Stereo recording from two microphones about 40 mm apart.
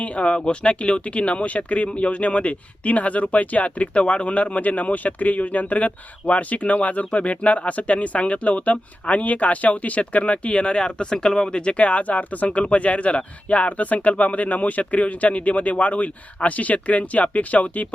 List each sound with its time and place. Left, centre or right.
0.0 s speech: left